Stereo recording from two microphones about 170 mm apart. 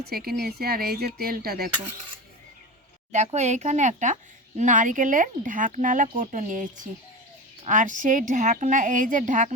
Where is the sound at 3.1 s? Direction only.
45° right (ahead or behind).